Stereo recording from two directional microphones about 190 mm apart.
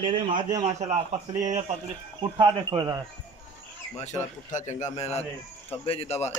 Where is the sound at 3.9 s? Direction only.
35° left (ahead or behind).